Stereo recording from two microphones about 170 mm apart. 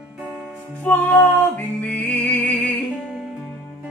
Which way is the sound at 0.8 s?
10° left (ahead or behind).